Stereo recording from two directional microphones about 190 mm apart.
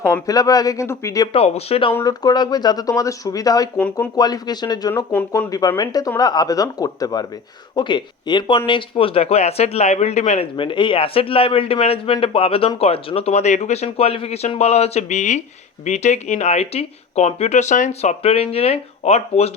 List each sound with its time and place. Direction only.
0.3 s speech: 20° left (ahead or behind)
1.3 s speech: 30° left (ahead or behind)
1.9 s speech: 15° left (ahead or behind)
5.1 s speech: 10° left (ahead or behind)
5.5 s speech: 20° left (ahead or behind)